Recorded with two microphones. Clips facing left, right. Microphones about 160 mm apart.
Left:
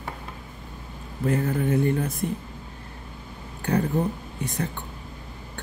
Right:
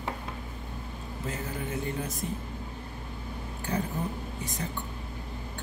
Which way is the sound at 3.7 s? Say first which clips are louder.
Left 8 dB; 65° left (ahead or behind).